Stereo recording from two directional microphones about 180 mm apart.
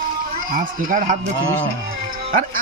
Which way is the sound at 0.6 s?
45° right (ahead or behind).